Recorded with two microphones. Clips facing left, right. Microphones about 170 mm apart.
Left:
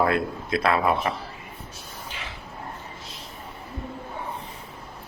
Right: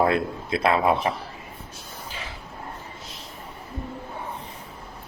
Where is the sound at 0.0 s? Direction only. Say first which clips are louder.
Right 1 dB; 25° right (ahead or behind).